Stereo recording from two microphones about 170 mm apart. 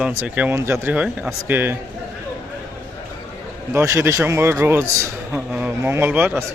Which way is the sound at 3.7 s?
15° right (ahead or behind).